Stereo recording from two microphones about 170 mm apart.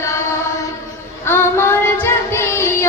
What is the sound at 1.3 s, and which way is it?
Child singing, 15° left (ahead or behind).